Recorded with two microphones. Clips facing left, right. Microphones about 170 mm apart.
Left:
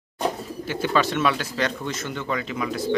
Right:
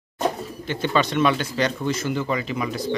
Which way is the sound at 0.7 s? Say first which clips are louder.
Even; 5° left (ahead or behind).